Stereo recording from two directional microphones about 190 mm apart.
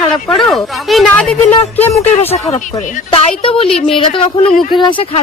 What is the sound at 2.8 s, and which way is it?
Speech, 40° left (ahead or behind).